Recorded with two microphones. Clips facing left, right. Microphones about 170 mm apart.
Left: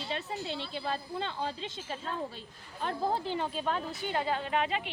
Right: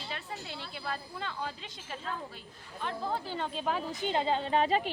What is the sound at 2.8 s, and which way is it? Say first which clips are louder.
Speech: left 3 dB; 35° left (ahead or behind).